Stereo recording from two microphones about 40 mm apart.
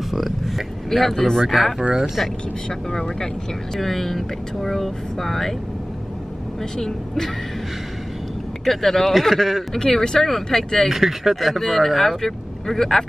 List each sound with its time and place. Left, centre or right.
0.1 s speech: centre
0.8 s speech: centre
2.9 s speech: centre
8.6 s speech: centre
9.8 s speech: centre
10.9 s speech: centre